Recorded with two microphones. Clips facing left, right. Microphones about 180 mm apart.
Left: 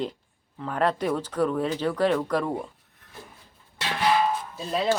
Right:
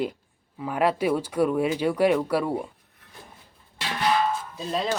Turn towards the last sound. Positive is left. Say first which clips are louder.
# left 2 dB
turn(degrees=0)  # may be behind; listen again after turning